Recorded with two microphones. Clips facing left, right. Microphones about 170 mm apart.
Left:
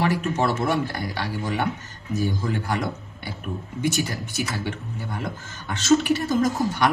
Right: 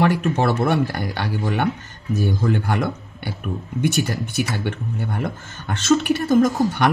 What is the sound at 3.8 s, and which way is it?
Speech, 60° right (ahead or behind).